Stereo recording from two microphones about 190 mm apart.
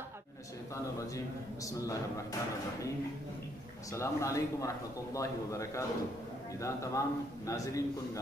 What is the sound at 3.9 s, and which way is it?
A man's voice, 15° left (ahead or behind).